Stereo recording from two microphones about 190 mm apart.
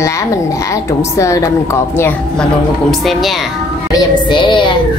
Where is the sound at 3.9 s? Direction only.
25° left (ahead or behind).